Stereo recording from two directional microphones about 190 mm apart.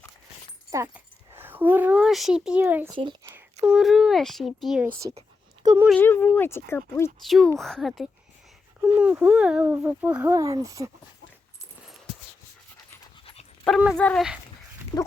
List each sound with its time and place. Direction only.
0.7 s speech: 15° right (ahead or behind)
2.9 s speech: 25° right (ahead or behind)
3.7 s speech: centre (ahead or behind)
5.6 s speech: 15° right (ahead or behind)
5.9 s speech: 10° left (ahead or behind)
7.3 s speech: centre (ahead or behind); by 10.9 s 15° right (ahead or behind)
13.7 s speech: centre (ahead or behind)
14.9 s pig: 20° left (ahead or behind)